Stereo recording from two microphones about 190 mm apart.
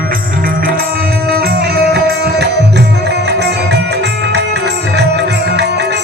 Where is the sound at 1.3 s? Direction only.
55° right (ahead or behind).